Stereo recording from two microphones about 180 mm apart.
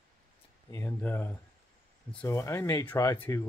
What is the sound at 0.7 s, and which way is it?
Speech, 15° left (ahead or behind).